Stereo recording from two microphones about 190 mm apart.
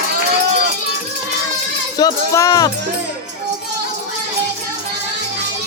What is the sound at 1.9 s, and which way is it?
Speech, 15° left (ahead or behind).